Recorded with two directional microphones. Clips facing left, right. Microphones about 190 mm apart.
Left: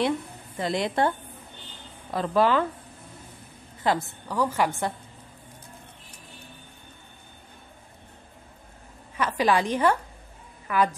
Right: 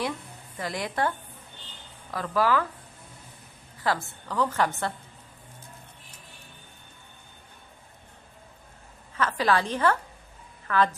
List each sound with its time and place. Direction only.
0.6 s a woman's voice: 25° left (ahead or behind)
3.8 s a woman's voice: 15° left (ahead or behind)
9.1 s a woman's voice: 15° left (ahead or behind)